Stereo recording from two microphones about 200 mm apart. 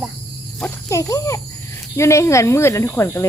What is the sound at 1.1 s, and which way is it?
Speech, 15° left (ahead or behind).